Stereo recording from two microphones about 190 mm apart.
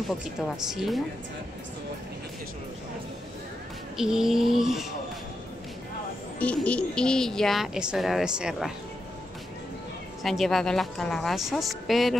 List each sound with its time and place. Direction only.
0.7 s speech: centre (ahead or behind)
3.9 s speech: 5° right (ahead or behind)
6.4 s speech: 5° left (ahead or behind)
10.2 s speech: centre (ahead or behind)